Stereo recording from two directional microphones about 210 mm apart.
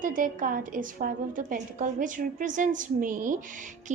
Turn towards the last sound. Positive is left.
turn(degrees=-40)  # may be behind; listen again after turning